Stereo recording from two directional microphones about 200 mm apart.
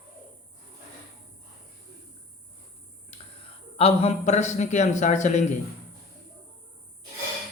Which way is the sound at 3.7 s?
30° left (ahead or behind).